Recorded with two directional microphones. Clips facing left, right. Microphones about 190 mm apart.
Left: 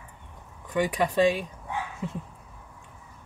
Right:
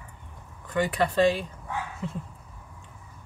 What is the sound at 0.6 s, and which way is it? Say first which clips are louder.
Speech: even; 15° left (ahead or behind).